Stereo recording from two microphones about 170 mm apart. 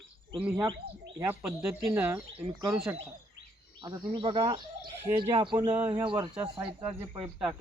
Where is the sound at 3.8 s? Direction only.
25° right (ahead or behind).